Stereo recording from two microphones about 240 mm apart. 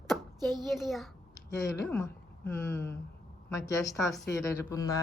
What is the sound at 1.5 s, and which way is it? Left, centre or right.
Speech, centre.